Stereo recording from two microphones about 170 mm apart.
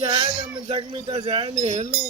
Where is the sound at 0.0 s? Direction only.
25° right (ahead or behind).